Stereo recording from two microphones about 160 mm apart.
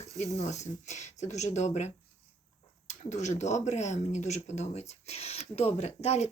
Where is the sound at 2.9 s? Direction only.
45° left (ahead or behind).